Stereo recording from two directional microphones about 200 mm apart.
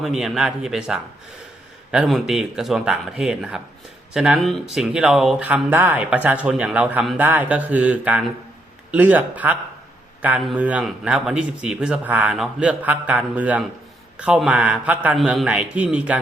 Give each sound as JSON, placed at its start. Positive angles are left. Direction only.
{"t": 0.0, "sound": "a man's voice", "side_deg": 0}